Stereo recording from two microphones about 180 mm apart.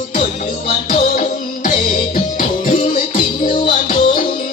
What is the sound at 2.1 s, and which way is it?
Music, 45° left (ahead or behind).